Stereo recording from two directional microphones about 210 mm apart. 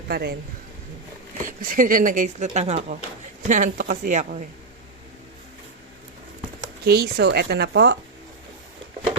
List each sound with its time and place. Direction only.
0.1 s speech: 50° right (ahead or behind)
1.5 s speech: 40° right (ahead or behind)
6.8 s speech: 50° right (ahead or behind)